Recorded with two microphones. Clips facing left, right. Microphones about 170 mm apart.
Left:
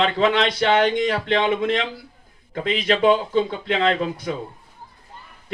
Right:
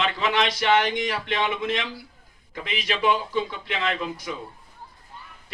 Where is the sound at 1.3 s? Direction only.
50° left (ahead or behind).